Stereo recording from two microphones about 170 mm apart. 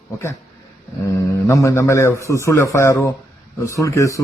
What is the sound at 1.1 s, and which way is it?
A man's voice, 20° left (ahead or behind).